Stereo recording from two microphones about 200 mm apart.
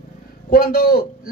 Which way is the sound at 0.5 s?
50° left (ahead or behind).